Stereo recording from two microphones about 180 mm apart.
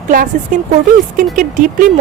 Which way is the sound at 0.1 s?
50° right (ahead or behind).